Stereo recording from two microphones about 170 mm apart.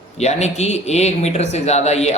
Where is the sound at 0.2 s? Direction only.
40° left (ahead or behind).